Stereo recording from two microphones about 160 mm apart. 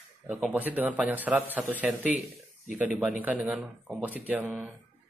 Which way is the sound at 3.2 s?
5° right (ahead or behind).